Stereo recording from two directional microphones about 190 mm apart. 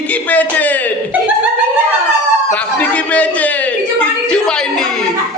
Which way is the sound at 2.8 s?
10° left (ahead or behind).